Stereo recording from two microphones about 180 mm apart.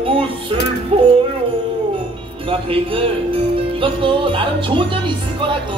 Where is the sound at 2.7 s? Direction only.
30° right (ahead or behind).